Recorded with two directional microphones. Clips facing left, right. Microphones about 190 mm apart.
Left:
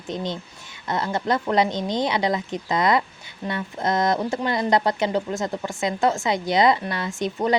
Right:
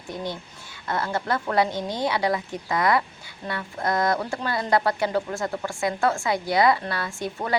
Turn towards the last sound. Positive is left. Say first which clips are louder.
# left 5 dB
turn(degrees=20)  # may be behind; listen again after turning